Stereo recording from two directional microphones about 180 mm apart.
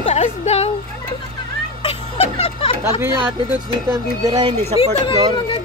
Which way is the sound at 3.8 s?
20° right (ahead or behind).